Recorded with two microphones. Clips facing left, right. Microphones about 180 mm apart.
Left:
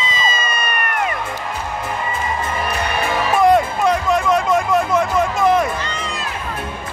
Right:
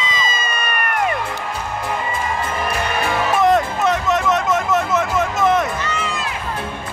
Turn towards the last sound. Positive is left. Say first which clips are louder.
# right 2 dB
turn(degrees=35)  # may be behind; listen again after turning